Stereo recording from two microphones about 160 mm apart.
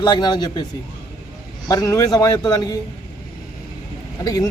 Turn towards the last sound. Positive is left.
turn(degrees=20)  # may be behind; listen again after turning